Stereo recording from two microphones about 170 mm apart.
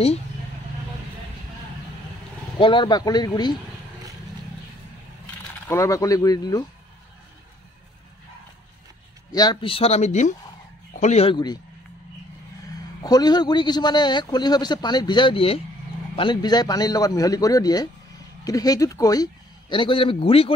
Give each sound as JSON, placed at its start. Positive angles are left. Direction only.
{"t": 2.6, "sound": "a man's voice", "side_deg": 30}
{"t": 5.7, "sound": "a man's voice", "side_deg": 20}
{"t": 9.3, "sound": "speech", "side_deg": 25}
{"t": 11.3, "sound": "a man's voice", "side_deg": 25}
{"t": 13.0, "sound": "a man's voice", "side_deg": 25}